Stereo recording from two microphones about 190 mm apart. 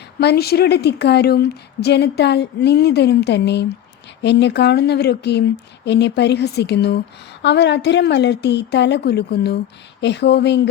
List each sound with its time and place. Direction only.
0.2 s a woman's voice: 60° left (ahead or behind)